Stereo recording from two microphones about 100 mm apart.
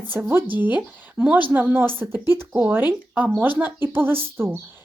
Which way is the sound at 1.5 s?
20° right (ahead or behind).